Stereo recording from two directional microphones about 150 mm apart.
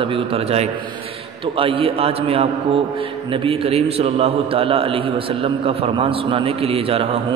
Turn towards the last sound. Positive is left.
turn(degrees=-40)  # may be behind; listen again after turning